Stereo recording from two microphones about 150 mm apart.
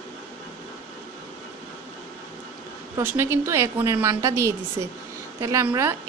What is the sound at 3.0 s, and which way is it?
A woman's voice, 15° right (ahead or behind).